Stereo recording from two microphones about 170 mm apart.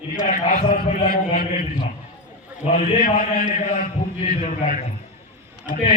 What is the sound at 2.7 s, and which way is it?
Speech, 45° left (ahead or behind).